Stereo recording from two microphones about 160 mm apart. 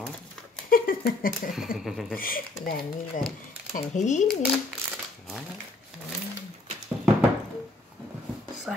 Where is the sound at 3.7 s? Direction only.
50° left (ahead or behind).